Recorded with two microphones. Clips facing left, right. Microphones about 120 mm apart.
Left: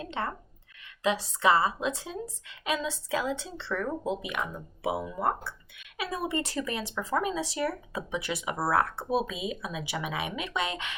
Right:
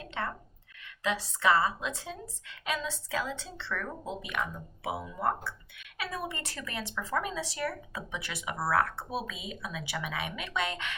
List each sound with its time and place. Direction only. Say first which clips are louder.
0.2 s a woman's voice: left 1 dB; 25° left (ahead or behind)